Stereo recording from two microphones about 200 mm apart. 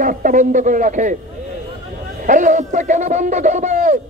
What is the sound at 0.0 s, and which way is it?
Fowl, 40° right (ahead or behind).